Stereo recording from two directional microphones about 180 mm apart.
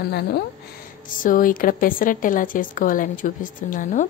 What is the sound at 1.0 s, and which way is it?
A woman's voice, 50° left (ahead or behind).